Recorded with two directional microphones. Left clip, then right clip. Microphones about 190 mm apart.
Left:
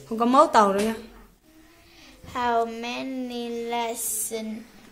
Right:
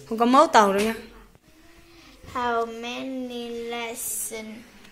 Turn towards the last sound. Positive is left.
turn(degrees=20)  # may be behind; listen again after turning